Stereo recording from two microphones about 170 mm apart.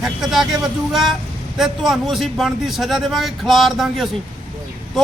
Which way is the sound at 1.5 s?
Centre (ahead or behind).